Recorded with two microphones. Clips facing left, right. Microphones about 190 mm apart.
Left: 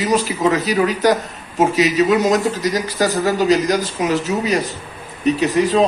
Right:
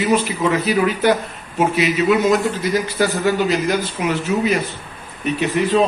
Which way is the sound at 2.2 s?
40° left (ahead or behind).